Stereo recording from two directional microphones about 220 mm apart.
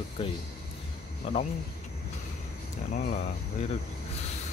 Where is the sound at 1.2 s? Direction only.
30° left (ahead or behind).